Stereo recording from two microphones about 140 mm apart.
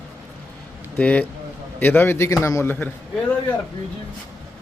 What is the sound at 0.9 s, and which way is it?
A man's voice, 10° left (ahead or behind).